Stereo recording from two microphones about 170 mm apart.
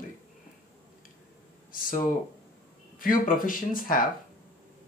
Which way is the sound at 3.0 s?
55° left (ahead or behind).